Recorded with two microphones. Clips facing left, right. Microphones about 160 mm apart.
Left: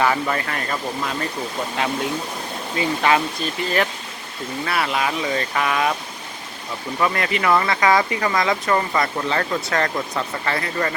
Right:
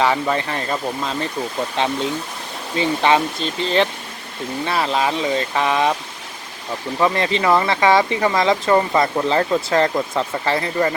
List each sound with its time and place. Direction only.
0.0 s speech: 20° right (ahead or behind)
1.8 s speech: 25° right (ahead or behind)
7.0 s speech: 25° right (ahead or behind)